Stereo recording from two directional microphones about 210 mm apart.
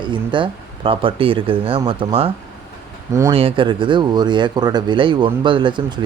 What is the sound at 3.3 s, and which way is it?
Speech, 25° right (ahead or behind).